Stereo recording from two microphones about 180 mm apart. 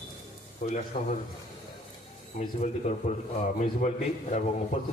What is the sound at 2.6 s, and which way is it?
A man's voice, 40° left (ahead or behind).